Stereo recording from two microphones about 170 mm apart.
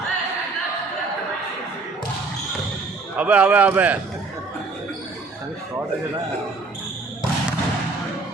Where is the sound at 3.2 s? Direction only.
10° right (ahead or behind).